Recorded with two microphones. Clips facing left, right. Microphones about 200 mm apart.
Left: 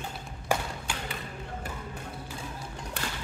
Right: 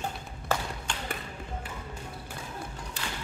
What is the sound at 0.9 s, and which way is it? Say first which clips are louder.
Basketball bounce: left 1 dB; 5° left (ahead or behind).